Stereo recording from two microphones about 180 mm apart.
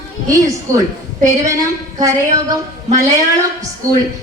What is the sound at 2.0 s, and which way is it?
Speech, 20° right (ahead or behind).